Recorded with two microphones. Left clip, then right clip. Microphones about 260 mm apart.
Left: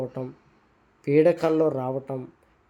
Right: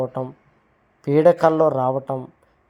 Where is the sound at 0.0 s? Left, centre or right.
Centre.